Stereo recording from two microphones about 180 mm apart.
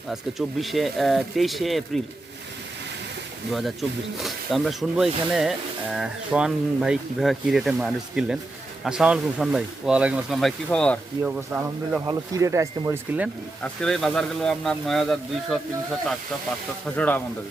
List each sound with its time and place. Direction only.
0.1 s speech: centre (ahead or behind)
3.5 s speech: centre (ahead or behind)
11.2 s speech: 10° right (ahead or behind)
13.6 s speech: 5° left (ahead or behind)
16.8 s speech: 10° left (ahead or behind)